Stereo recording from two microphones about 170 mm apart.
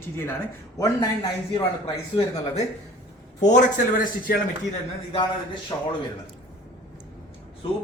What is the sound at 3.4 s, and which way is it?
Speech, 45° left (ahead or behind).